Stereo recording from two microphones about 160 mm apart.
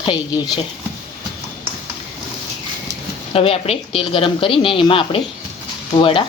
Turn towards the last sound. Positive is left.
turn(degrees=35)  # may be behind; listen again after turning